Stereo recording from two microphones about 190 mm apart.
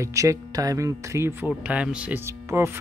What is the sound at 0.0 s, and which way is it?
Speech, 15° right (ahead or behind).